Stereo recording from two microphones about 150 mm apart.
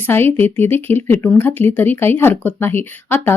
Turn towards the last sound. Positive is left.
turn(degrees=15)  # may be behind; listen again after turning